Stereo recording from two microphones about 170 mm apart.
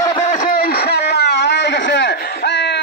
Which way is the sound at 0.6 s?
65° left (ahead or behind).